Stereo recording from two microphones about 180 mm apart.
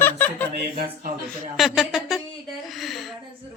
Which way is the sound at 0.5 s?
65° right (ahead or behind).